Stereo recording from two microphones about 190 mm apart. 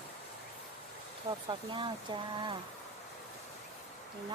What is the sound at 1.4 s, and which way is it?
Speech, 25° right (ahead or behind).